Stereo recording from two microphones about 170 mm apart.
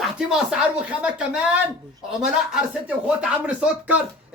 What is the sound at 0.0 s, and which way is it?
Speech, 5° right (ahead or behind).